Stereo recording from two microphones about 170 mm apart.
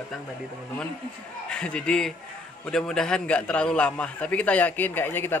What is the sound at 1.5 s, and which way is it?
A man's voice, 5° left (ahead or behind).